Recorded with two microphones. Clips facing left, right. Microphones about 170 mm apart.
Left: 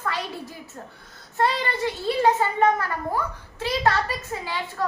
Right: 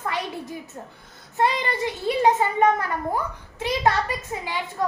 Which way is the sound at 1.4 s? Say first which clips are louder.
Right 1 dB; 15° right (ahead or behind).